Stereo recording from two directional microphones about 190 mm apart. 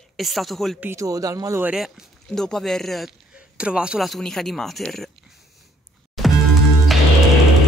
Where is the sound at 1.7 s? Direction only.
Centre (ahead or behind).